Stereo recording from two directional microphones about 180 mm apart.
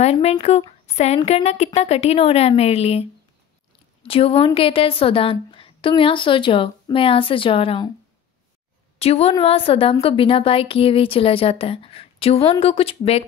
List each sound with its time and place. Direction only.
0.0 s a woman's voice: 35° left (ahead or behind)
8.9 s a woman's voice: 35° left (ahead or behind)